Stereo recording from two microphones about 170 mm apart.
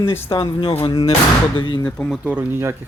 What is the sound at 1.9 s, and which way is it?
Speech, 5° left (ahead or behind).